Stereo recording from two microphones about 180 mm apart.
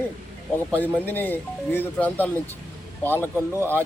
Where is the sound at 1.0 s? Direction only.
10° left (ahead or behind).